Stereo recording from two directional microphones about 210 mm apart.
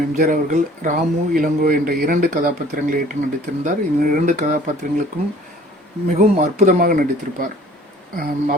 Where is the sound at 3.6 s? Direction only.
40° right (ahead or behind).